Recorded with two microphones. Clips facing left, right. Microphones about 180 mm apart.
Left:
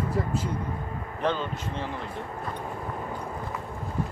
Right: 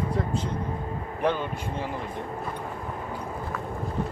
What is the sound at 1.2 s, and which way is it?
Speech, 10° right (ahead or behind).